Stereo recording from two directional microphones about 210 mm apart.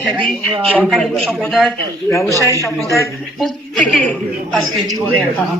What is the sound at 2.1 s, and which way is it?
Speech, 15° left (ahead or behind).